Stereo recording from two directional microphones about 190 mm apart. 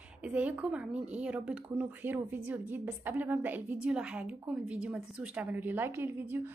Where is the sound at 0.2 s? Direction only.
5° right (ahead or behind).